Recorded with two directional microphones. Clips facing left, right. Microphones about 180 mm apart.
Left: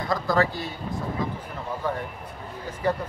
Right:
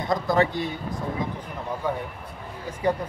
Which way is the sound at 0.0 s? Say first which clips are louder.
Right 1 dB; 20° right (ahead or behind).